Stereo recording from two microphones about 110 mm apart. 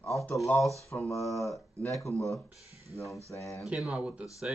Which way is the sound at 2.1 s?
10° left (ahead or behind).